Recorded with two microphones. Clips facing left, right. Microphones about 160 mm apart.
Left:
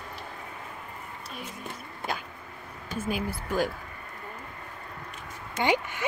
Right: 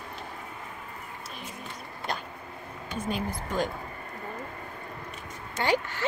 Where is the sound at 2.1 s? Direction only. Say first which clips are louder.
Even; 5° left (ahead or behind).